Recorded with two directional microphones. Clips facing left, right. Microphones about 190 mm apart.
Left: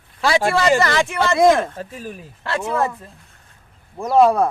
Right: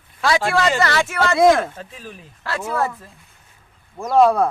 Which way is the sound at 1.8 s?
45° left (ahead or behind).